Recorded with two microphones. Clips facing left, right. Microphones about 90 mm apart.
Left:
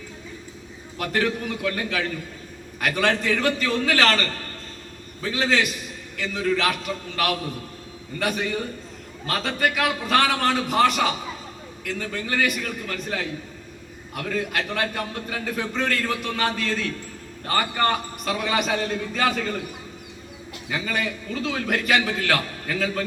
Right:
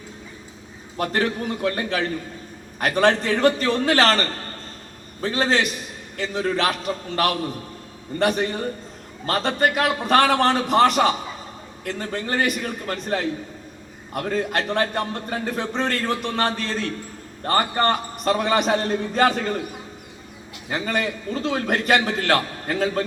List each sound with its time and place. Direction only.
0.9 s a man's voice: 35° right (ahead or behind)
20.7 s a man's voice: 40° right (ahead or behind)